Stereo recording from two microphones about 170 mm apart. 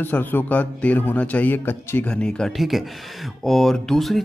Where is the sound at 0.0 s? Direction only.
10° left (ahead or behind).